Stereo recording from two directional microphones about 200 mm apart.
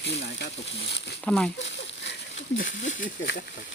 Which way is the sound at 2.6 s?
40° left (ahead or behind).